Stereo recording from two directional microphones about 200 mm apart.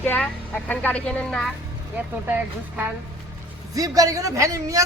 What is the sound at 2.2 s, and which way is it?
Speech, 10° right (ahead or behind).